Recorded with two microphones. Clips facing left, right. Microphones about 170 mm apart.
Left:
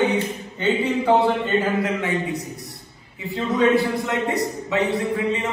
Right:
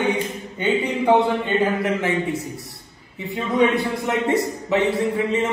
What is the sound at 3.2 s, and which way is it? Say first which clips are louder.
Speech: right 2 dB; 20° right (ahead or behind).